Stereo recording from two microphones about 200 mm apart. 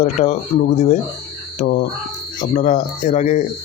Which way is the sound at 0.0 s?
35° left (ahead or behind).